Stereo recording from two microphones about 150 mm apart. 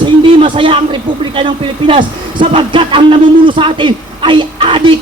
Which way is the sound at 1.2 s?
35° right (ahead or behind).